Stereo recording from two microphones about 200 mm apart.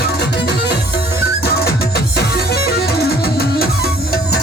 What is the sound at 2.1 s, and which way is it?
Music, 50° left (ahead or behind).